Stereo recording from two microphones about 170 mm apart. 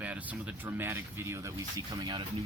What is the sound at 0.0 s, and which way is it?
Speech, 10° right (ahead or behind).